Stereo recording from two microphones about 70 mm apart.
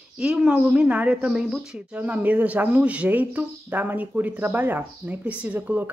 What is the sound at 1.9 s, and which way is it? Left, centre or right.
Speech, right.